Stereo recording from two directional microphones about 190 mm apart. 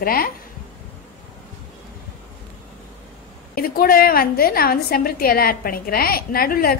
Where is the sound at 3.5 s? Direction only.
50° left (ahead or behind).